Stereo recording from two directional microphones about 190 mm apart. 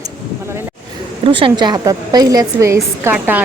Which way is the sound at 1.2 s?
25° right (ahead or behind).